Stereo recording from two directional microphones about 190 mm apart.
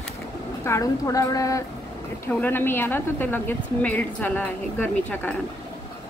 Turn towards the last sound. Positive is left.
turn(degrees=10)  # may be behind; listen again after turning